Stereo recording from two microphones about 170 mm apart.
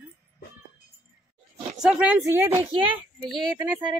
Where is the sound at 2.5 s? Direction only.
30° right (ahead or behind).